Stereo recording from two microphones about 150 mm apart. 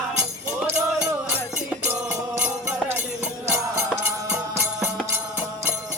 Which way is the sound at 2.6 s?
10° right (ahead or behind).